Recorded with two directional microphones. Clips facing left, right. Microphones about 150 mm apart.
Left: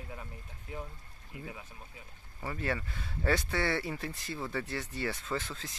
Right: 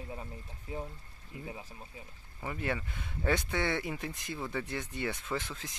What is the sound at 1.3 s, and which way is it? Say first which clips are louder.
Speech: right 1 dB; 30° right (ahead or behind).